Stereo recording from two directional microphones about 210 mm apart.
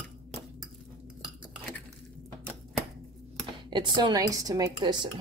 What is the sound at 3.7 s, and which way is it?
Speech, 20° right (ahead or behind).